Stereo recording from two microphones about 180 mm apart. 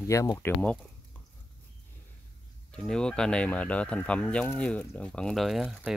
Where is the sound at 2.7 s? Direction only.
5° left (ahead or behind).